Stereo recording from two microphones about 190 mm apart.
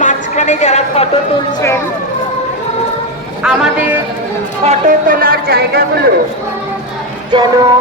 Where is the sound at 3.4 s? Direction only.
5° right (ahead or behind).